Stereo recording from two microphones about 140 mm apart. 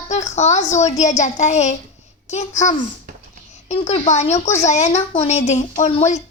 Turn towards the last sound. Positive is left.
turn(degrees=50)  # may be behind; listen again after turning